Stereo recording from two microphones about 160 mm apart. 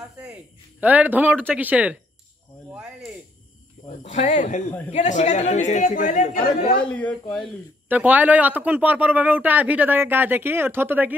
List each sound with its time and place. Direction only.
0.2 s speech: 5° right (ahead or behind)
2.7 s cricket: 5° right (ahead or behind)
4.0 s speech: 45° left (ahead or behind)
6.8 s speech: 10° left (ahead or behind)
7.9 s speech: 10° right (ahead or behind)